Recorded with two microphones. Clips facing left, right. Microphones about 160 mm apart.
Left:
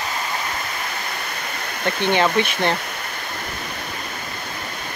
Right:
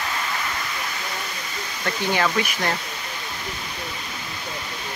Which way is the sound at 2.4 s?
25° left (ahead or behind).